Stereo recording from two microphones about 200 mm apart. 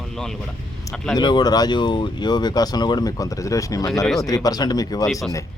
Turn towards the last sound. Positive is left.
turn(degrees=20)  # may be behind; listen again after turning